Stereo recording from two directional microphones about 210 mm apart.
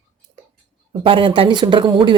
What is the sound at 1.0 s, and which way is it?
A woman's voice, 25° right (ahead or behind).